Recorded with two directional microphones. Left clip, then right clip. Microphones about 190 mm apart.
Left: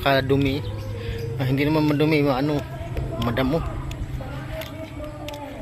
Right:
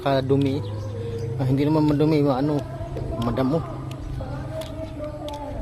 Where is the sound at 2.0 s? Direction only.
10° right (ahead or behind).